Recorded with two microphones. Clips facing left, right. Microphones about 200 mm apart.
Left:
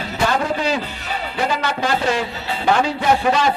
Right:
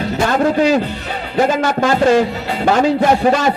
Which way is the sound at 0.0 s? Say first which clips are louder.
Right 5 dB; 50° right (ahead or behind).